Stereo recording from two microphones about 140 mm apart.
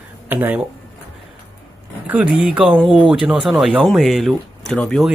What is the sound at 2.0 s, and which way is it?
Speech, 10° right (ahead or behind).